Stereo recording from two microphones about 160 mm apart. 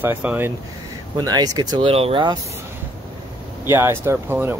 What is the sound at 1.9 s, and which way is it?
Speech, 35° right (ahead or behind).